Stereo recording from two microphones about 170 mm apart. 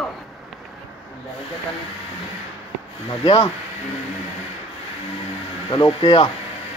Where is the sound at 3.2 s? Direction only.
30° left (ahead or behind).